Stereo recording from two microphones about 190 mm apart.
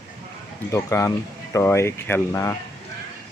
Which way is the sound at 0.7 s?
15° left (ahead or behind).